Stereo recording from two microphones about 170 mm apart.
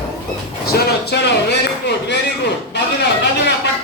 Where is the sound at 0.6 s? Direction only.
70° left (ahead or behind); by 2.1 s 85° left.